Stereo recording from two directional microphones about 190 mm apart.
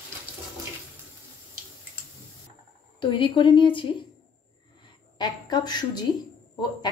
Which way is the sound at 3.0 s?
25° left (ahead or behind).